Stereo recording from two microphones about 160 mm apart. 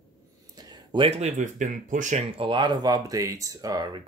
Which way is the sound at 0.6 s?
30° right (ahead or behind).